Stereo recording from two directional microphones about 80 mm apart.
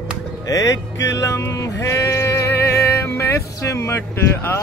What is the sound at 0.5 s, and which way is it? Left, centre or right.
Speech, left.